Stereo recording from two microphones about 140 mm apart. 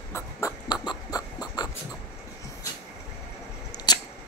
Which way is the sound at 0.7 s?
30° left (ahead or behind).